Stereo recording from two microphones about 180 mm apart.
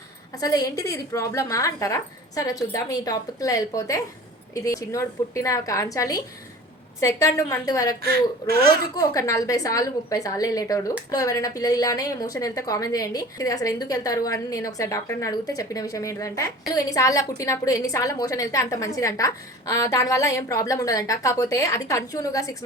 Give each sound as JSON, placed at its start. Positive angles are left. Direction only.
{"t": 0.3, "sound": "a woman's voice", "side_deg": 20}